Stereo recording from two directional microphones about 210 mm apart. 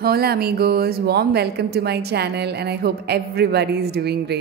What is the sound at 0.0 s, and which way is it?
Speech, 50° right (ahead or behind).